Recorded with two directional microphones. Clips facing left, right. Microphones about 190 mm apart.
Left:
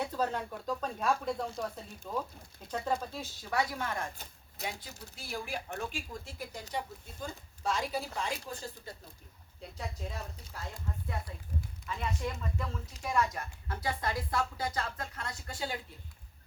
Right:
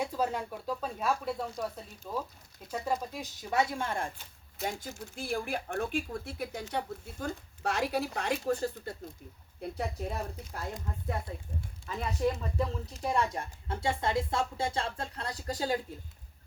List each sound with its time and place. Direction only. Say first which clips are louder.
0.0 s speech: right 1 dB; 10° right (ahead or behind); by 4.1 s 30° right (ahead or behind)
4.6 s speech: right 5 dB; 50° right (ahead or behind)
11.9 s speech: right 6 dB; 35° right (ahead or behind)